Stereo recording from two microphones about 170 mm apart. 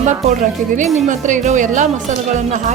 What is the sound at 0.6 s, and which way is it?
A woman's voice, 50° right (ahead or behind).